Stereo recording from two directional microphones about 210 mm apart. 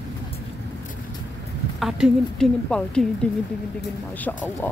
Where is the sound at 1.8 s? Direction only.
Centre (ahead or behind).